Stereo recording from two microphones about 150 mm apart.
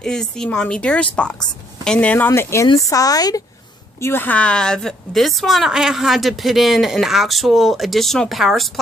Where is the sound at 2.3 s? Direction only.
20° left (ahead or behind).